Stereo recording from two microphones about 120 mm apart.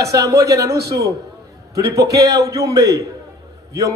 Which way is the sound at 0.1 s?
30° right (ahead or behind).